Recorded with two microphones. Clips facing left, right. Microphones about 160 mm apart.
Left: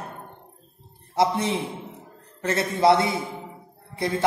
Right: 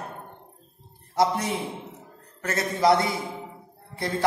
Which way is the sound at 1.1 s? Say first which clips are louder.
Left 1 dB; 25° left (ahead or behind).